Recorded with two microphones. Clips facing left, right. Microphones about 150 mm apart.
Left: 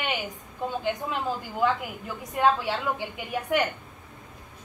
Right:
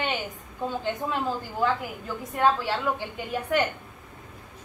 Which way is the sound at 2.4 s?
15° left (ahead or behind).